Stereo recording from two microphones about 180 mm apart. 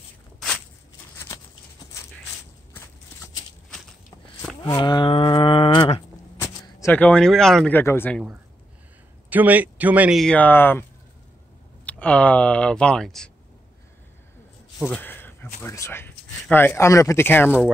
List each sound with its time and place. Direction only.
4.6 s cattle: 25° left (ahead or behind)
6.3 s speech: 15° left (ahead or behind)
9.3 s speech: 10° right (ahead or behind)
10.2 s speech: 10° left (ahead or behind)
14.8 s a sound: 5° left (ahead or behind)
15.6 s speech: 15° left (ahead or behind)